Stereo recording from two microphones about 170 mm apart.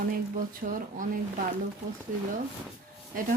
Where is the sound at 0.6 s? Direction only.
55° right (ahead or behind).